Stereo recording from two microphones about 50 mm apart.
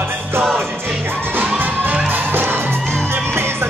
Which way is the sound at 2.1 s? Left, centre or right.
Right.